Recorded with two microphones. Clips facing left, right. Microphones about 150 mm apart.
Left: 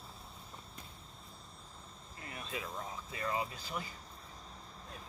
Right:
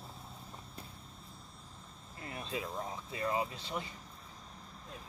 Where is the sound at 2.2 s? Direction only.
30° right (ahead or behind).